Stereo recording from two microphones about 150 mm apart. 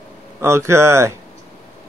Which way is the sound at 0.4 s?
20° right (ahead or behind).